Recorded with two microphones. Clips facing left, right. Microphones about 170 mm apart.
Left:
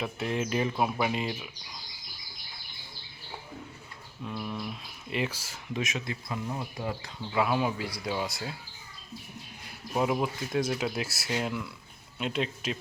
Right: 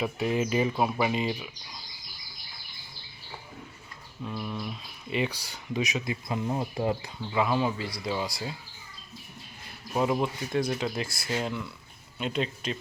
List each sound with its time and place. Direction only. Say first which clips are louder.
0.0 s speech: right 4 dB; 5° right (ahead or behind)
4.3 s speech: right 1 dB; centre (ahead or behind)
6.1 s speech: right 4 dB; 20° right (ahead or behind)
7.3 s speech: right 1 dB; 5° left (ahead or behind)
9.9 s speech: right 1 dB; 5° left (ahead or behind)